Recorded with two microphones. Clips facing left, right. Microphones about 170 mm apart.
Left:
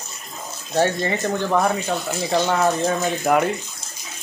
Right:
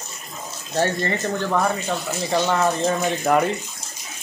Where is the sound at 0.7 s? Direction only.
15° left (ahead or behind).